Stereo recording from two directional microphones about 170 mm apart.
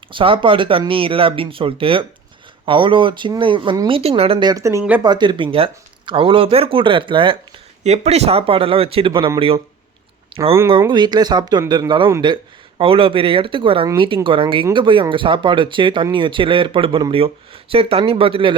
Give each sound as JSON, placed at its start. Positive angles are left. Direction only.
{"t": 0.1, "sound": "speech", "side_deg": -30}
{"t": 5.0, "sound": "speech", "side_deg": -25}
{"t": 10.7, "sound": "speech", "side_deg": -30}